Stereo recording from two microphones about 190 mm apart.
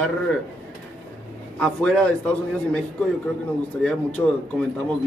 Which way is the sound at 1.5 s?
5° left (ahead or behind).